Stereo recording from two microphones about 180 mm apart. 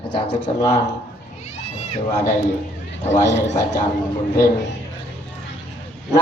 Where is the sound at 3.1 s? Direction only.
45° left (ahead or behind).